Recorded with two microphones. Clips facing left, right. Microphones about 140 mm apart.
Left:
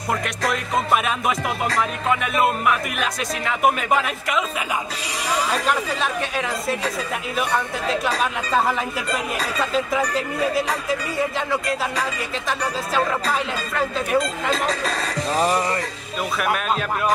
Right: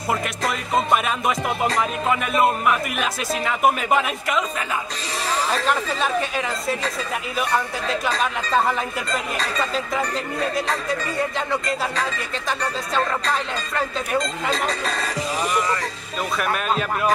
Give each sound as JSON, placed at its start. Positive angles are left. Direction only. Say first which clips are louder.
{"t": 0.9, "sound": "speech", "louder": "even", "side_deg": 0}
{"t": 5.7, "sound": "speech", "louder": "right 1 dB", "side_deg": 0}
{"t": 15.3, "sound": "music", "louder": "left 4 dB", "side_deg": 35}
{"t": 16.3, "sound": "speech", "louder": "even", "side_deg": 0}